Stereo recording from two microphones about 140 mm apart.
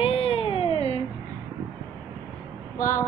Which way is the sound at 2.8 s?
75° left (ahead or behind).